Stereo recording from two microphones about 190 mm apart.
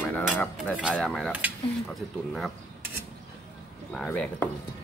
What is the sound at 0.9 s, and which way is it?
Speech, 5° left (ahead or behind).